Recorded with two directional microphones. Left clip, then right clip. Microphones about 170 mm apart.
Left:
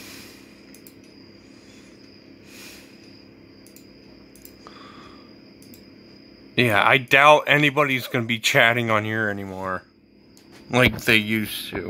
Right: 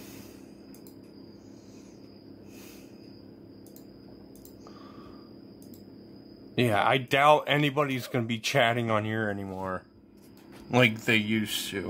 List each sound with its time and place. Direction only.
6.5 s speech: 5° left (ahead or behind)